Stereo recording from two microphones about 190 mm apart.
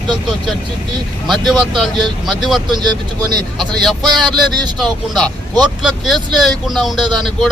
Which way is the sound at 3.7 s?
Centre (ahead or behind).